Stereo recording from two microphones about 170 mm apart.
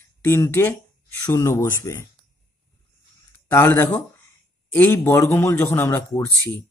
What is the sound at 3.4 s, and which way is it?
Speech, 15° left (ahead or behind).